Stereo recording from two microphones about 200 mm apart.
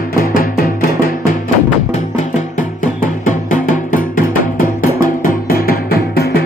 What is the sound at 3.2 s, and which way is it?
Music, 40° left (ahead or behind).